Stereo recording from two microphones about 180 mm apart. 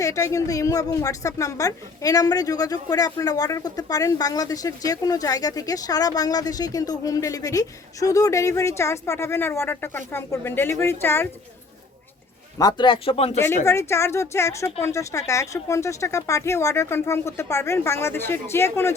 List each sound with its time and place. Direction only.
0.0 s a woman's voice: 15° left (ahead or behind)
12.5 s a woman's voice: 25° left (ahead or behind)
13.7 s a woman's voice: 15° left (ahead or behind)